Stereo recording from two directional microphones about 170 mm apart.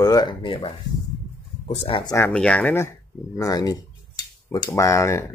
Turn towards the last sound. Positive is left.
turn(degrees=15)  # may be behind; listen again after turning